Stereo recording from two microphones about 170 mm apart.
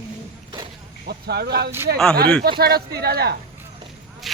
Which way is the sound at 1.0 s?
70° right (ahead or behind).